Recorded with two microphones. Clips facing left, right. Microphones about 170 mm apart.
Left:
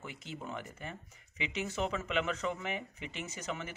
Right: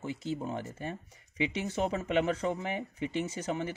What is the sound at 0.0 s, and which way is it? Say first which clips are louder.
Speech: right 9 dB; 30° right (ahead or behind).